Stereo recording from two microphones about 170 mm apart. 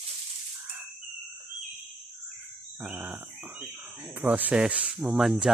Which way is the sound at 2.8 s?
10° right (ahead or behind).